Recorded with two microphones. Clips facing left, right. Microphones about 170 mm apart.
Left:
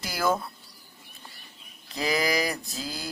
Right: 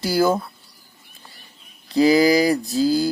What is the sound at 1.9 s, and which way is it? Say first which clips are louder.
Speech: right 12 dB; 30° right (ahead or behind).